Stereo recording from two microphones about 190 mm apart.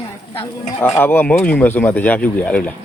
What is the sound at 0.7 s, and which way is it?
Speech, 10° left (ahead or behind).